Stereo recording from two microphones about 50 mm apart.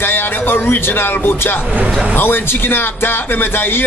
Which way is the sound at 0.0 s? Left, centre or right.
Left.